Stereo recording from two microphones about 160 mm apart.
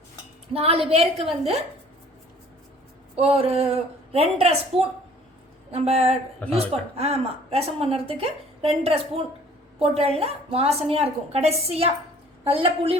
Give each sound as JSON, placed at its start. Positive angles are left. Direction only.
{"t": 0.5, "sound": "a woman's voice", "side_deg": -40}
{"t": 3.2, "sound": "a woman's voice", "side_deg": -35}
{"t": 6.4, "sound": "speech", "side_deg": 10}
{"t": 6.9, "sound": "a woman's voice", "side_deg": -40}